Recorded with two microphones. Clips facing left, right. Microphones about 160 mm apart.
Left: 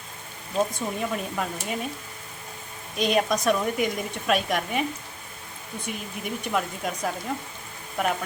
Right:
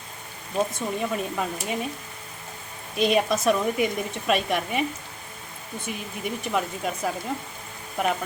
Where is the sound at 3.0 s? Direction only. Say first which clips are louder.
Right 1 dB; centre (ahead or behind).